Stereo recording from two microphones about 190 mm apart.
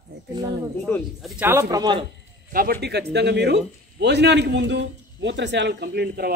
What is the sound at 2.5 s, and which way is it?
Speech, 50° right (ahead or behind).